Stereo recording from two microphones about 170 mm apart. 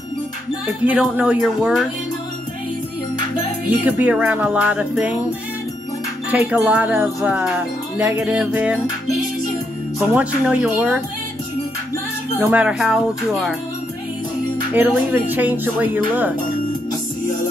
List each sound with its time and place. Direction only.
0.8 s music: 5° right (ahead or behind)
3.8 s speech: 10° right (ahead or behind)
6.3 s speech: 10° right (ahead or behind)
7.2 s music: 5° right (ahead or behind)
9.9 s speech: 5° right (ahead or behind)
12.4 s music: 10° right (ahead or behind)
14.7 s speech: 10° right (ahead or behind)